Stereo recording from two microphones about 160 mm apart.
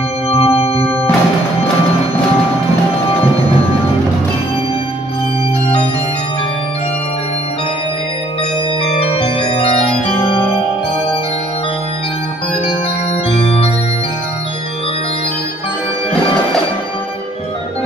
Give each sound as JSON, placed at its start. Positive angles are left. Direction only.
{"t": 0.3, "sound": "music", "side_deg": 35}
{"t": 9.0, "sound": "organ", "side_deg": 35}
{"t": 13.3, "sound": "organ", "side_deg": 35}